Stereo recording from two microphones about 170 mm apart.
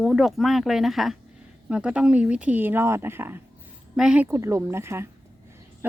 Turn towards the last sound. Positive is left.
turn(degrees=-15)  # may be behind; listen again after turning